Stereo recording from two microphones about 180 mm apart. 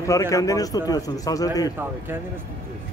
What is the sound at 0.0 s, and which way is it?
A man's voice, 20° left (ahead or behind).